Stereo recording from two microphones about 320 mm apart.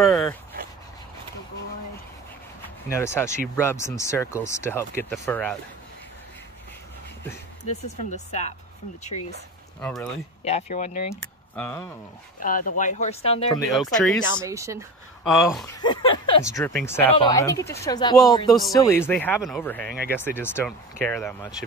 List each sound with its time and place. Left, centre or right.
0.0 s dog: centre
2.9 s speech: centre
7.6 s speech: left
9.8 s speech: centre
10.4 s speech: left
11.5 s speech: centre
12.4 s speech: left
13.7 s speech: centre
14.4 s speech: centre
15.7 s speech: centre
19.9 s speech: right
20.2 s speech: centre